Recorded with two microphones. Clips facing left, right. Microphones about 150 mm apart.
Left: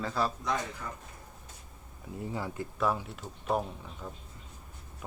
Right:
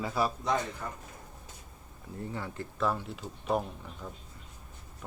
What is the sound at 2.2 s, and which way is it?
Speech, 15° left (ahead or behind).